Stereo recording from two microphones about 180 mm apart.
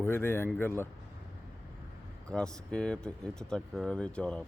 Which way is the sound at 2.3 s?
5° left (ahead or behind).